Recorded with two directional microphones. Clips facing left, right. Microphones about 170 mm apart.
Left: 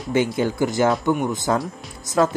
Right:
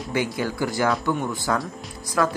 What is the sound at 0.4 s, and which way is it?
Speech, 20° left (ahead or behind).